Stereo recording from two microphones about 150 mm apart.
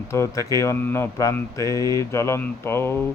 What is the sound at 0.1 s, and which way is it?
Speech, 20° left (ahead or behind).